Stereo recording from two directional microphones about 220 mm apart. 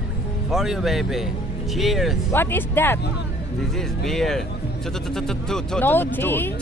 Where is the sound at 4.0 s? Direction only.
Centre (ahead or behind).